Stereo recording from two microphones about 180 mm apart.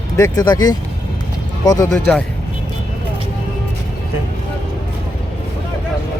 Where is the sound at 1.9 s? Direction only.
5° left (ahead or behind).